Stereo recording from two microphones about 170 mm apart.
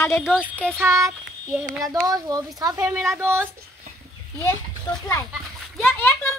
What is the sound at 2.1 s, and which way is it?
A woman's voice, 20° right (ahead or behind).